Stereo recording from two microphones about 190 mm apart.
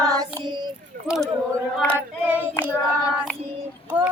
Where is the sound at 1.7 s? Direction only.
5° left (ahead or behind).